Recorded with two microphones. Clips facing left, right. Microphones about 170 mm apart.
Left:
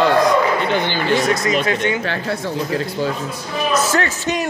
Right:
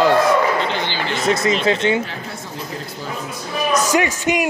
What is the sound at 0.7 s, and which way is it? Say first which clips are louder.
Speech: left 4 dB; 50° left (ahead or behind).